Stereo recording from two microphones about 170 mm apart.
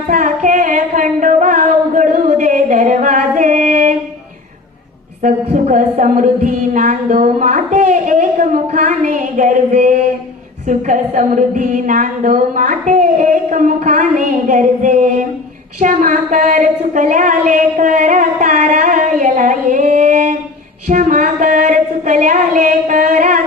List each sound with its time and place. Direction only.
0.1 s singing: 45° right (ahead or behind)
5.2 s speech: 45° right (ahead or behind)
20.8 s a sound: 50° right (ahead or behind)